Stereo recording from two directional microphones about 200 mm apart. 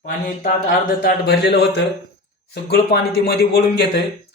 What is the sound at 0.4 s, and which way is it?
A man's voice, 50° left (ahead or behind).